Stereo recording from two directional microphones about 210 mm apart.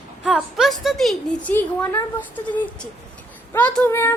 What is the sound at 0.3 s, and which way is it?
A woman's voice, centre (ahead or behind).